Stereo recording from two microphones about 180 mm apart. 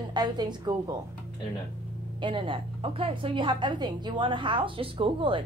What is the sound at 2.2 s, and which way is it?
A woman's voice, 30° right (ahead or behind).